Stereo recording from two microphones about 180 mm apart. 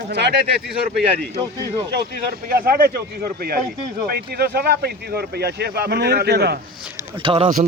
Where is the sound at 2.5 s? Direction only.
55° right (ahead or behind).